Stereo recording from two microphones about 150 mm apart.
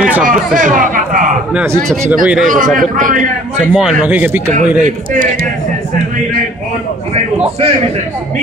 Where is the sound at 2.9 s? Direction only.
60° right (ahead or behind).